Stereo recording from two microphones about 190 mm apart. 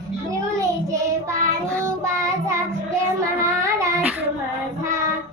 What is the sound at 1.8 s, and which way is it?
Child singing, 15° right (ahead or behind).